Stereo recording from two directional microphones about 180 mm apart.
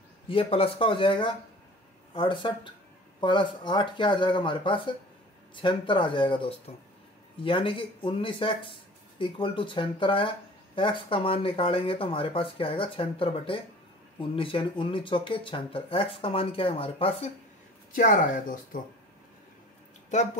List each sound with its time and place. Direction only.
0.3 s speech: 30° left (ahead or behind)
17.9 s speech: 50° left (ahead or behind)